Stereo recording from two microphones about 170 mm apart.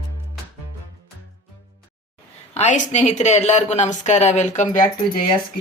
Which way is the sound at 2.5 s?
40° left (ahead or behind).